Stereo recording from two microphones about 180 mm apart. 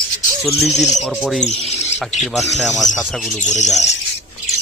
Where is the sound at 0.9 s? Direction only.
Centre (ahead or behind).